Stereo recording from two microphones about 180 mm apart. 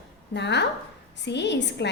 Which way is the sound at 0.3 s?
70° left (ahead or behind).